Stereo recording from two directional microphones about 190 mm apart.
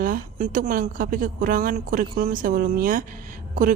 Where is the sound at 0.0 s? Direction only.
45° right (ahead or behind).